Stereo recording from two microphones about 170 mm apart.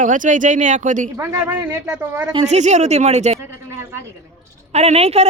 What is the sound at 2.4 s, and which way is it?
Speech, 45° right (ahead or behind).